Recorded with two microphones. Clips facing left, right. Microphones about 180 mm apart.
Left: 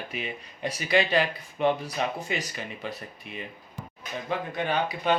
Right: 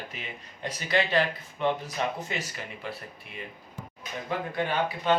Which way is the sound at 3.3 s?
20° left (ahead or behind).